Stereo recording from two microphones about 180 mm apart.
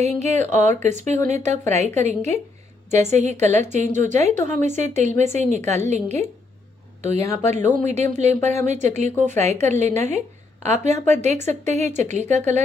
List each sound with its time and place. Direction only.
0.0 s a woman's voice: 40° right (ahead or behind)